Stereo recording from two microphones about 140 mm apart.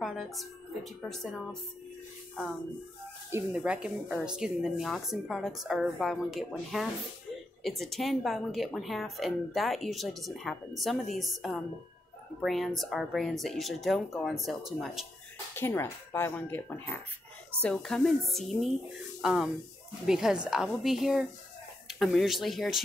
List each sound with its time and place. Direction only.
0.0 s a woman's voice: centre (ahead or behind)
3.5 s a woman's voice: 5° right (ahead or behind)
15.5 s a woman's voice: 20° left (ahead or behind); by 22.8 s centre (ahead or behind)